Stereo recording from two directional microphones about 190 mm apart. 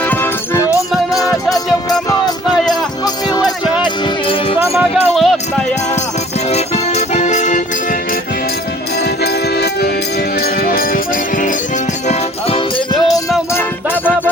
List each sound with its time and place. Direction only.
0.0 s music: 10° left (ahead or behind); by 4.5 s 25° left (ahead or behind)
5.1 s music: centre (ahead or behind)
6.5 s music: 35° left (ahead or behind)
9.2 s music: 60° left (ahead or behind)
12.0 s music: 30° left (ahead or behind)
13.5 s music: 10° left (ahead or behind)